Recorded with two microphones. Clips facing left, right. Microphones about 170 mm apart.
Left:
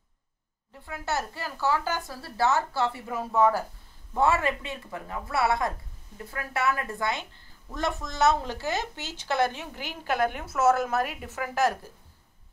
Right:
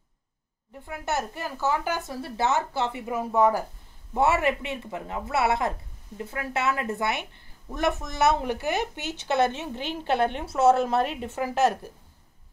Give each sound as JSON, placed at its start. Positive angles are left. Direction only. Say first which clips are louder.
{"t": 0.8, "sound": "a woman's voice", "louder": "right 2 dB", "side_deg": -20}